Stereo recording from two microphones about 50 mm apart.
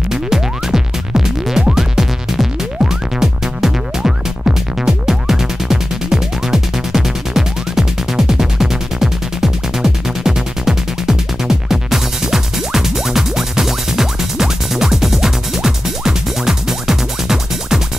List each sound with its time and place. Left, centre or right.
0.1 s music: centre